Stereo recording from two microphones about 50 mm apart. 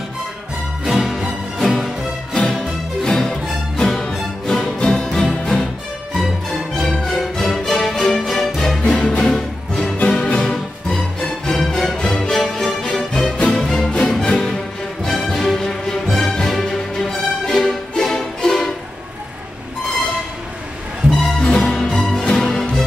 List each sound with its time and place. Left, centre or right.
0.8 s music: centre
3.0 s music: centre
6.1 s music: centre
8.8 s music: left
21.5 s music: centre